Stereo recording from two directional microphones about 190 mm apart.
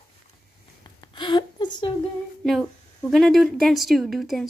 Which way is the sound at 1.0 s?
25° left (ahead or behind).